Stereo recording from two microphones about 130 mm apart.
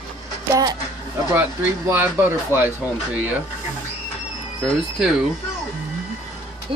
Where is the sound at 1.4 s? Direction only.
15° right (ahead or behind).